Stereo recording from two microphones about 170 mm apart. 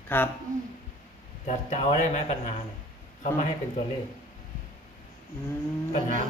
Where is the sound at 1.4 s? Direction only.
45° left (ahead or behind).